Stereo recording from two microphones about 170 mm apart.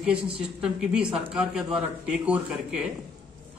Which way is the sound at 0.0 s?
5° right (ahead or behind).